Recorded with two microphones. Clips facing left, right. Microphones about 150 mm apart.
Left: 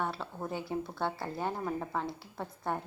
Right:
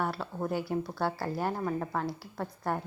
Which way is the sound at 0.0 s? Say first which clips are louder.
Right 3 dB; 5° right (ahead or behind).